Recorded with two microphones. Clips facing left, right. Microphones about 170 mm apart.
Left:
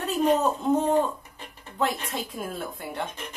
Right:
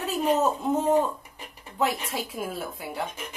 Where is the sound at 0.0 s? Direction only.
5° right (ahead or behind).